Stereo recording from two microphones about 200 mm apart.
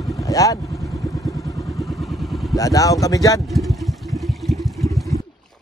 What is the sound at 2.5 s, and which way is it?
Speech, 15° left (ahead or behind).